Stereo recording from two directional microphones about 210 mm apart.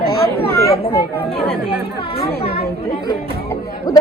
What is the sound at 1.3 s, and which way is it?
Speech, 45° left (ahead or behind).